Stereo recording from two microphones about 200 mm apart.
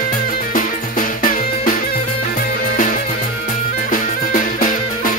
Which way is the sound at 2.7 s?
40° left (ahead or behind).